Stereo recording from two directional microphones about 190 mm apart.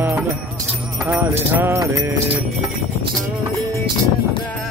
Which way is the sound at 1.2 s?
10° right (ahead or behind).